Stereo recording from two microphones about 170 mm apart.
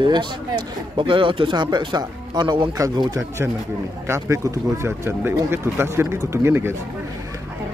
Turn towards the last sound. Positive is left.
turn(degrees=-15)  # may be behind; listen again after turning